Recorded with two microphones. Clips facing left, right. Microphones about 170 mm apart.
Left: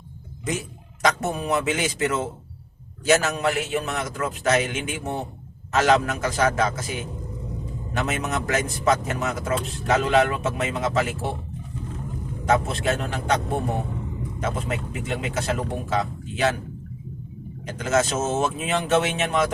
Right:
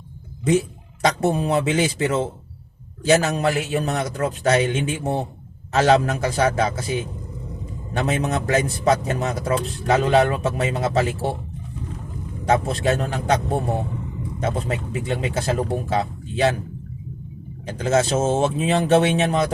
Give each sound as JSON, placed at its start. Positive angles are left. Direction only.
{"t": 1.0, "sound": "a man's voice", "side_deg": -30}
{"t": 7.9, "sound": "a man's voice", "side_deg": -30}
{"t": 12.5, "sound": "a man's voice", "side_deg": -35}
{"t": 14.4, "sound": "a man's voice", "side_deg": -35}
{"t": 17.7, "sound": "a man's voice", "side_deg": -30}